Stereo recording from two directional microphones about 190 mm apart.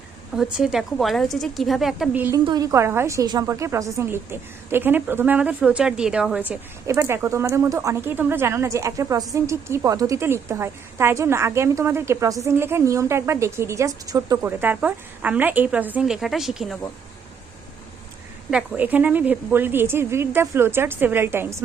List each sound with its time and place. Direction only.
0.3 s speech: 5° right (ahead or behind)
2.4 s a woman's voice: 20° right (ahead or behind); by 16.7 s centre (ahead or behind)
18.5 s a woman's voice: 5° right (ahead or behind)